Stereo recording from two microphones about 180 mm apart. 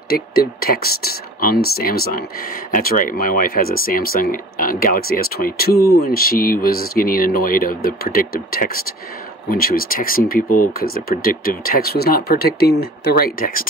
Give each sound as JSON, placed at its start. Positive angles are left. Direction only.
{"t": 0.1, "sound": "speech", "side_deg": 55}